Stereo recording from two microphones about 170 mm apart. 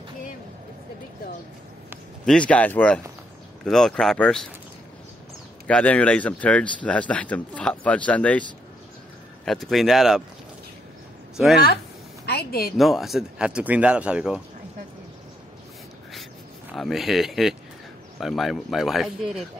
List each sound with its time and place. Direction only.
2.2 s speech: 5° left (ahead or behind)
5.7 s speech: 5° left (ahead or behind)
11.3 s speech: 5° right (ahead or behind)
12.3 s a woman's voice: 65° left (ahead or behind)
12.7 s speech: centre (ahead or behind)
16.7 s speech: centre (ahead or behind)